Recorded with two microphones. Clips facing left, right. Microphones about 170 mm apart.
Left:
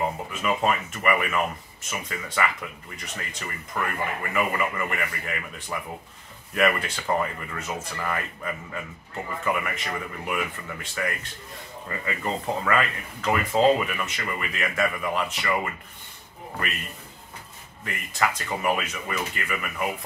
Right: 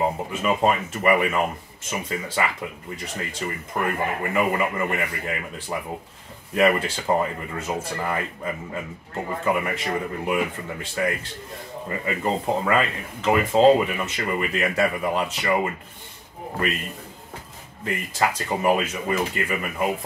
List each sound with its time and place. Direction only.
0.0 s speech: 30° right (ahead or behind)
17.8 s speech: 30° right (ahead or behind)